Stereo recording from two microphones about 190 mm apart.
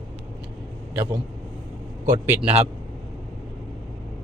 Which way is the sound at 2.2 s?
10° right (ahead or behind).